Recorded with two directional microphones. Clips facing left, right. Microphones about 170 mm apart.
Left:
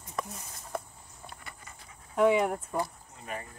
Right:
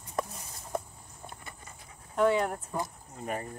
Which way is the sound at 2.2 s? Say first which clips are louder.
Left 2 dB; 10° left (ahead or behind).